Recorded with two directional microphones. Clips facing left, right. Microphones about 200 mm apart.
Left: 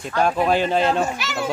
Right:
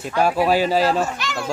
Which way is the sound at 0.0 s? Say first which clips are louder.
Right 1 dB; 5° right (ahead or behind).